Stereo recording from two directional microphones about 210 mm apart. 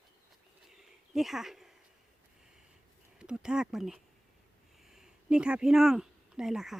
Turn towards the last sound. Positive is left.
turn(degrees=0)  # may be behind; listen again after turning